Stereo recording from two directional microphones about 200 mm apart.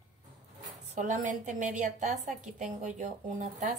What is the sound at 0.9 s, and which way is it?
Speech, 40° right (ahead or behind).